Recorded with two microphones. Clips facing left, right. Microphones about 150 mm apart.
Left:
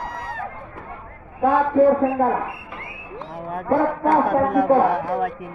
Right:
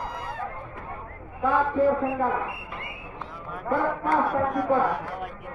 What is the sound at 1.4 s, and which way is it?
Speech, 50° left (ahead or behind).